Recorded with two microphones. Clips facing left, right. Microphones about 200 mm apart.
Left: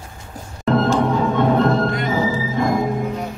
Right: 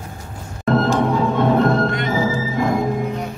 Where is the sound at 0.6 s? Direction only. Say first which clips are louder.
Even; centre (ahead or behind).